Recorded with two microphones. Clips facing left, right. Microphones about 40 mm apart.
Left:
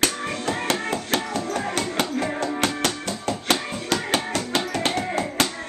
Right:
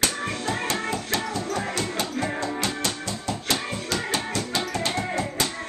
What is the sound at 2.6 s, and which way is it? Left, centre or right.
Music, left.